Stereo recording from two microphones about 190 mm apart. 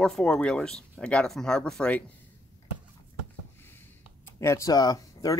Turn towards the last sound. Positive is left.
turn(degrees=20)  # may be behind; listen again after turning